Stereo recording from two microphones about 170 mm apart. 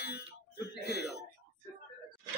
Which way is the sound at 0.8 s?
75° left (ahead or behind).